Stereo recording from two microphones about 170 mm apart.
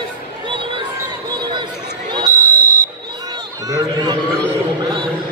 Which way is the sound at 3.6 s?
20° right (ahead or behind).